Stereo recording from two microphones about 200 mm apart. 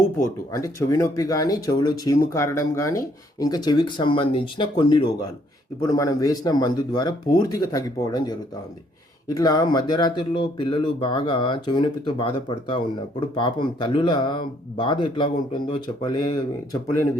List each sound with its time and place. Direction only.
0.5 s speech: 15° left (ahead or behind)